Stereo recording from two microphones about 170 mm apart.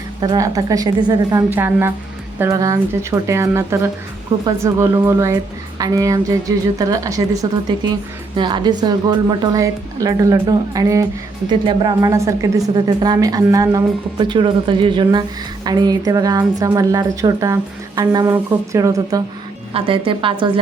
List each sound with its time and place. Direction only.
0.2 s a woman's voice: 25° right (ahead or behind)
1.5 s a woman's voice: 15° right (ahead or behind)
19.7 s a woman's voice: 30° right (ahead or behind)